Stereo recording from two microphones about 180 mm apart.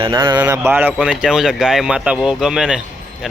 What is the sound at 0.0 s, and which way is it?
Speech, 25° right (ahead or behind).